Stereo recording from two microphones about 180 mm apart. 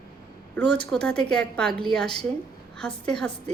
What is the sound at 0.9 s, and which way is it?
Speech, 5° left (ahead or behind).